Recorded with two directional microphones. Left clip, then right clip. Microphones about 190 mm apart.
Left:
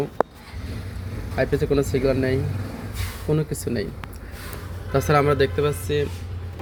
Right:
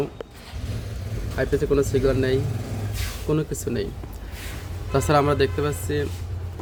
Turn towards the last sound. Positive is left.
turn(degrees=-10)  # may be behind; listen again after turning